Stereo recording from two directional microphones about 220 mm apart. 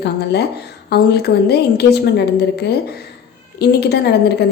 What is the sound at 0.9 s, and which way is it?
A woman's voice, 45° left (ahead or behind).